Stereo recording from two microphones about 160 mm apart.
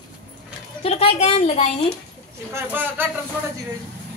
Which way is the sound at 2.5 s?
15° right (ahead or behind).